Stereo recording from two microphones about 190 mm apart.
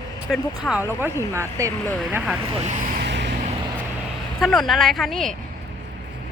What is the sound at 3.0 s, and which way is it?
Vehicle, 65° right (ahead or behind).